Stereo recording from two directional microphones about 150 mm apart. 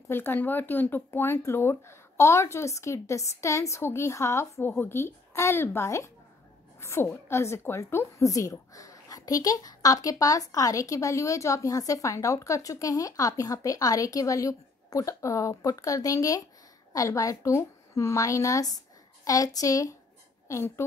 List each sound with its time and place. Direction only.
0.1 s speech: 15° left (ahead or behind)
6.8 s a sound: 15° left (ahead or behind)
7.2 s a woman's voice: 15° left (ahead or behind)